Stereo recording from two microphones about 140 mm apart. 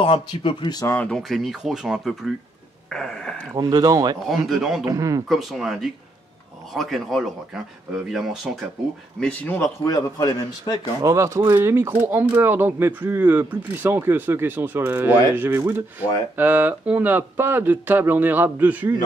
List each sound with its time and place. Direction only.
0.0 s speech: 40° left (ahead or behind)
0.9 s speech: 5° left (ahead or behind)
3.5 s speech: 25° right (ahead or behind)
4.3 s speech: centre (ahead or behind)
4.8 s speech: 25° right (ahead or behind)
5.3 s speech: centre (ahead or behind)
9.2 s speech: 10° left (ahead or behind)
9.8 s a man's voice: 25° left (ahead or behind)
11.0 s speech: 25° right (ahead or behind)